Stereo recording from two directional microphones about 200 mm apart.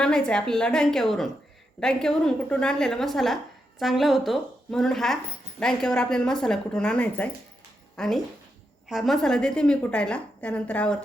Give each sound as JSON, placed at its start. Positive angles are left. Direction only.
{"t": 0.0, "sound": "speech", "side_deg": 5}